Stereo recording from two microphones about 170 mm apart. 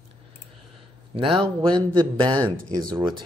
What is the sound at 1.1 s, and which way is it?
Speech, 35° right (ahead or behind).